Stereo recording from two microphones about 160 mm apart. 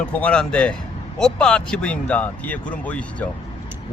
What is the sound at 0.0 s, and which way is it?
Speech, 10° left (ahead or behind).